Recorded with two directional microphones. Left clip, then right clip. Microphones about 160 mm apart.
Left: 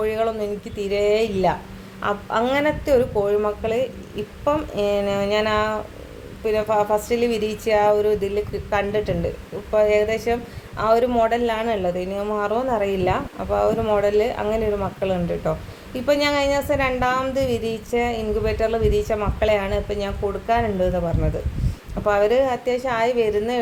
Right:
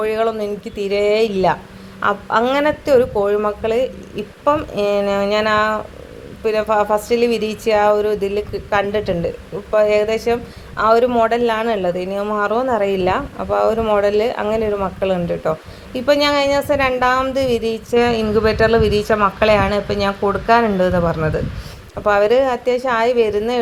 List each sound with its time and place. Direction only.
0.0 s a woman's voice: 15° right (ahead or behind)